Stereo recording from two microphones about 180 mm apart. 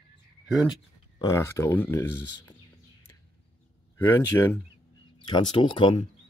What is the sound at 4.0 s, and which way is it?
Speech, 15° left (ahead or behind).